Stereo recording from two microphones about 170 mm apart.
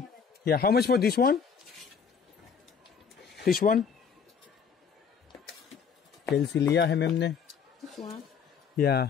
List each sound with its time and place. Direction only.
0.5 s speech: 65° left (ahead or behind)
3.3 s speech: 60° left (ahead or behind)
6.3 s speech: 80° left
6.7 s speech: 90° left
8.7 s speech: 65° left (ahead or behind)